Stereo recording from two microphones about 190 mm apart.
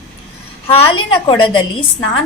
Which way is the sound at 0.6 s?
25° left (ahead or behind).